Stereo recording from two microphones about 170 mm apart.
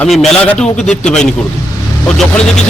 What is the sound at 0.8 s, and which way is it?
Speech, 40° left (ahead or behind).